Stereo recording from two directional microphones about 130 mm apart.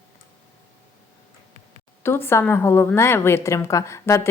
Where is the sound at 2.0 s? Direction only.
20° left (ahead or behind).